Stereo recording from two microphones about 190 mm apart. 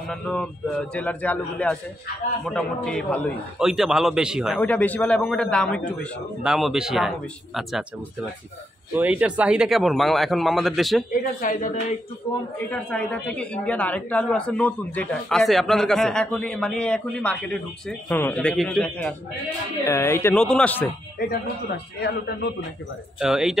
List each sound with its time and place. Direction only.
0.1 s a man's voice: 5° left (ahead or behind)
8.9 s a man's voice: 5° right (ahead or behind)
11.2 s speech: 45° left (ahead or behind)
12.2 s a man's voice: 25° left (ahead or behind)
12.6 s a man's voice: 5° left (ahead or behind)
19.8 s a man's voice: 15° left (ahead or behind)
21.2 s a man's voice: 55° left (ahead or behind)
23.1 s a man's voice: 5° right (ahead or behind)